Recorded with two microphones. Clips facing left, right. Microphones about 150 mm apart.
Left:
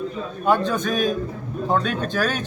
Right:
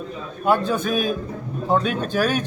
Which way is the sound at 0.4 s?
10° right (ahead or behind).